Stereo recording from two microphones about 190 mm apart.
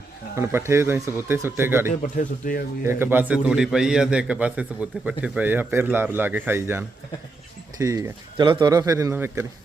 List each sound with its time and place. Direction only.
0.3 s a man's voice: 15° right (ahead or behind)
1.9 s speech: 45° left (ahead or behind)
2.8 s a man's voice: 10° right (ahead or behind)